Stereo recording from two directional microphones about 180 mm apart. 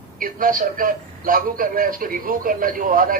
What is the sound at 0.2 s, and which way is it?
A man's voice, 50° right (ahead or behind).